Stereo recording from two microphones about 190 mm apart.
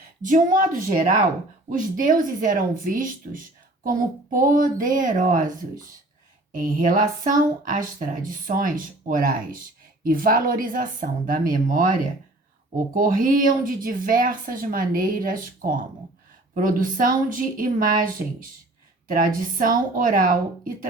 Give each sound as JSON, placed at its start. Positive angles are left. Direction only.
{"t": 0.2, "sound": "speech", "side_deg": -45}